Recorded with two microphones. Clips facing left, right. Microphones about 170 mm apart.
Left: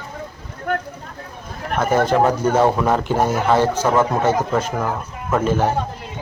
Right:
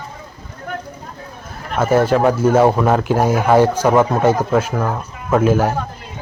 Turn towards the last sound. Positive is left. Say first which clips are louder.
# right 4 dB
turn(degrees=-5)  # may be behind; listen again after turning